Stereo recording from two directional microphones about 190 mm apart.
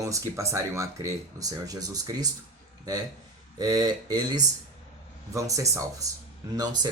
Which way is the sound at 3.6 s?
20° right (ahead or behind).